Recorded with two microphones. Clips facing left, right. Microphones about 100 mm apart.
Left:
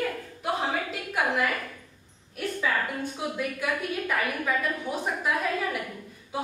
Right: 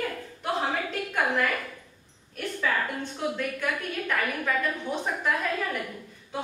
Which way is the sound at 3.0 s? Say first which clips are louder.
Even; 10° left (ahead or behind).